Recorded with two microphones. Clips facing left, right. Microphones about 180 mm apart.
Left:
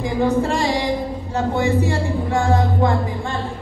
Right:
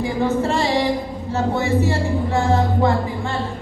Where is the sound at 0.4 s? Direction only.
15° left (ahead or behind).